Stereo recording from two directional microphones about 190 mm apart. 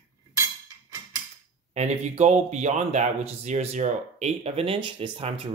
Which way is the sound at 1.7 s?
35° right (ahead or behind).